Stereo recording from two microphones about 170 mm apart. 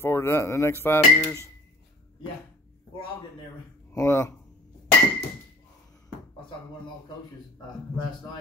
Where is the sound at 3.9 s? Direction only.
15° left (ahead or behind).